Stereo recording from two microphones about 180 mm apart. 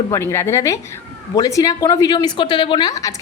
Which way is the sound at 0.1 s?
15° left (ahead or behind).